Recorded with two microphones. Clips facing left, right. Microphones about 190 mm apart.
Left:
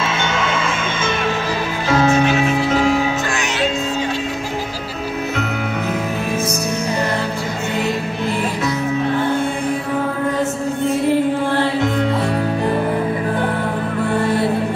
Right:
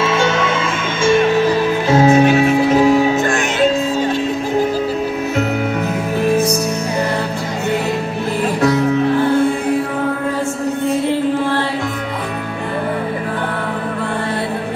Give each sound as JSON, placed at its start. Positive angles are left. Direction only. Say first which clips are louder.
{"t": 1.9, "sound": "music", "louder": "right 3 dB", "side_deg": -40}